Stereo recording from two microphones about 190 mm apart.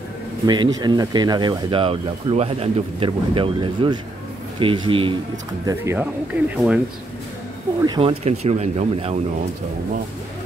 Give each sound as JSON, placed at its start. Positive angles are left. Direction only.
{"t": 0.5, "sound": "speech", "side_deg": -20}
{"t": 5.7, "sound": "speech", "side_deg": -15}
{"t": 7.8, "sound": "speech", "side_deg": -25}